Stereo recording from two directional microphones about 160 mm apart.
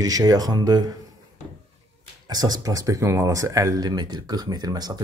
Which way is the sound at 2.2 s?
25° right (ahead or behind).